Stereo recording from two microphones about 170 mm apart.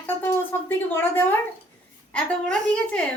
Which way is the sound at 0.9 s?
10° left (ahead or behind).